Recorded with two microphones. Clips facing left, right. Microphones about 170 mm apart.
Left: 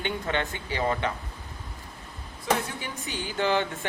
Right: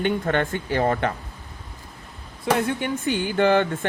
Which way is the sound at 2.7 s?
60° right (ahead or behind).